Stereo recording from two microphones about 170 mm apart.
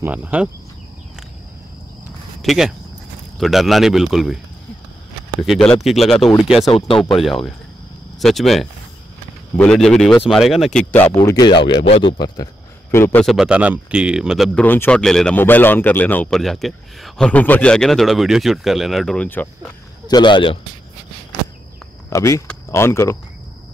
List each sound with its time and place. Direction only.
0.0 s speech: 10° right (ahead or behind)
2.4 s speech: centre (ahead or behind)
5.4 s speech: centre (ahead or behind)
11.2 s speech: 20° left (ahead or behind)
11.6 s speech: 35° left (ahead or behind)
12.9 s speech: 15° left (ahead or behind)
13.2 s speech: centre (ahead or behind)
20.1 s speech: 25° left (ahead or behind)
22.1 s speech: 20° left (ahead or behind)